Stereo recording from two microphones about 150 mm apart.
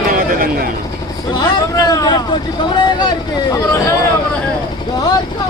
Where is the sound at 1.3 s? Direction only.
25° left (ahead or behind).